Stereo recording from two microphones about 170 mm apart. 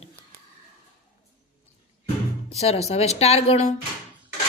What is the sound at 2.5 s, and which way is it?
A woman's voice, 40° left (ahead or behind).